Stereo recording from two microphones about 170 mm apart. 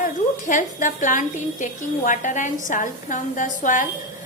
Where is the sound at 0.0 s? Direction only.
50° left (ahead or behind).